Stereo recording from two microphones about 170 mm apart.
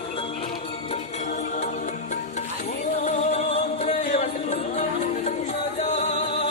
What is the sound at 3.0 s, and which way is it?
Music, 45° left (ahead or behind).